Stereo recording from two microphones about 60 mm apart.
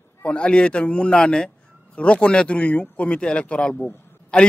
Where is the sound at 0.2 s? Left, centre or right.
Centre.